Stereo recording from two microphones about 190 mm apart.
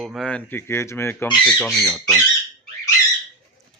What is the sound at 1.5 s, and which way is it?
Speech, centre (ahead or behind).